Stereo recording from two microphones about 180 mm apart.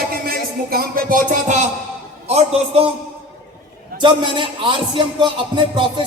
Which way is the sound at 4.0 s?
25° right (ahead or behind).